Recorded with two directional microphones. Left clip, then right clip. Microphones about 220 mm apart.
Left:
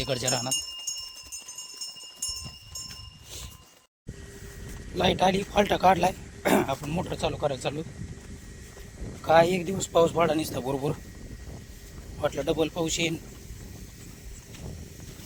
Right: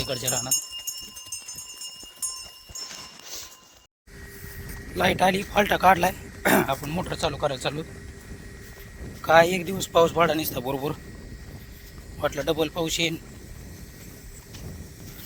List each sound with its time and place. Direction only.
0.0 s speech: 20° left (ahead or behind)
4.9 s speech: 5° left (ahead or behind)
9.2 s a man's voice: 5° left (ahead or behind)
12.2 s a man's voice: 5° left (ahead or behind)